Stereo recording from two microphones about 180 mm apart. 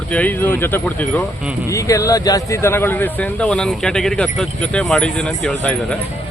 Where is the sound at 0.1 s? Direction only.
10° left (ahead or behind).